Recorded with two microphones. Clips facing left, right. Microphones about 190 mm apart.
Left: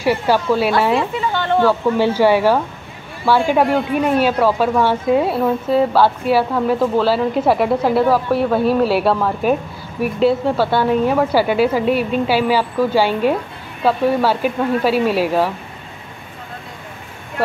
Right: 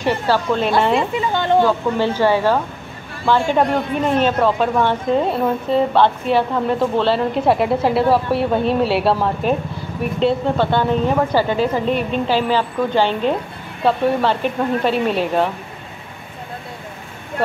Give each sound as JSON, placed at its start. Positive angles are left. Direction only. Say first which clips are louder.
{"t": 0.0, "sound": "a woman's voice", "louder": "left 2 dB", "side_deg": 10}
{"t": 0.9, "sound": "speech", "louder": "even", "side_deg": -15}
{"t": 2.0, "sound": "a woman's voice", "louder": "left 3 dB", "side_deg": 10}